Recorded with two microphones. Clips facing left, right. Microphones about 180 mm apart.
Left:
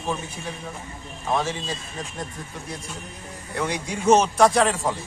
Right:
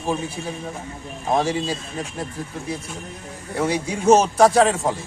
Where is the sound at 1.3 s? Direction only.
35° right (ahead or behind).